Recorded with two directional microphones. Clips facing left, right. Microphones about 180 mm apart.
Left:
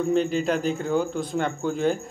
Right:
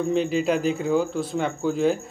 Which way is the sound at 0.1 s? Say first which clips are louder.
Right 1 dB; 5° right (ahead or behind).